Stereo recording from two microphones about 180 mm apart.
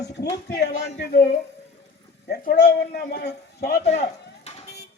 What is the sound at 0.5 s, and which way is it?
A man's voice, 65° left (ahead or behind).